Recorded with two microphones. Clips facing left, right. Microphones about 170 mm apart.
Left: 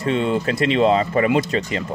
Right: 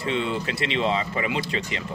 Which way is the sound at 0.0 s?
45° left (ahead or behind).